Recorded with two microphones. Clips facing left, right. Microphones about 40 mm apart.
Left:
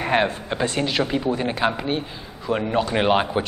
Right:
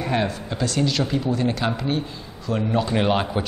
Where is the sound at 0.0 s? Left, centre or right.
Left.